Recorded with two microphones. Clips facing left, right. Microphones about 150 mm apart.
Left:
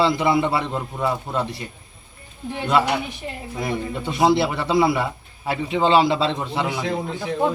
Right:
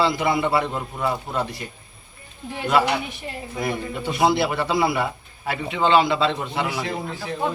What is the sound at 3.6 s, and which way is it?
A man's voice, 30° left (ahead or behind).